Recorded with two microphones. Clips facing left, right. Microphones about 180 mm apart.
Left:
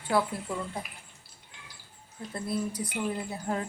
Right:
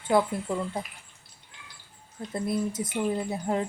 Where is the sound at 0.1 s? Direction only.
20° right (ahead or behind).